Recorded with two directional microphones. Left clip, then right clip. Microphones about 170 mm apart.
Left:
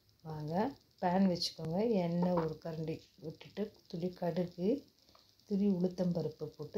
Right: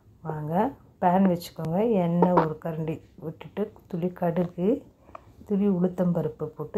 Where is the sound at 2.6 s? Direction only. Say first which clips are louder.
Right 9 dB; 15° right (ahead or behind).